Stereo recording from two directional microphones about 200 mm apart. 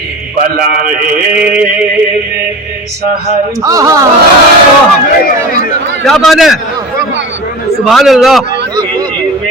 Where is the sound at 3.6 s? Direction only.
15° right (ahead or behind).